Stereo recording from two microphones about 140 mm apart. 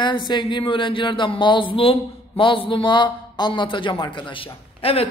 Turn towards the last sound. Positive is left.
turn(degrees=45)  # may be behind; listen again after turning